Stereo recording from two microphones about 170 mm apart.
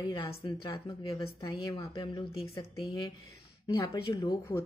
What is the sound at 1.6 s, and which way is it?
A woman's voice, 25° left (ahead or behind).